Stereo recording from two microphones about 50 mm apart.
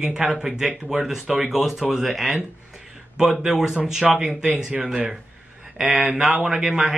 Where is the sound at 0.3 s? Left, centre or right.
Centre.